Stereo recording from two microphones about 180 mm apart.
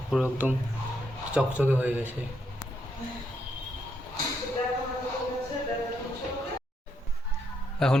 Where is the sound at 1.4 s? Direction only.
10° right (ahead or behind).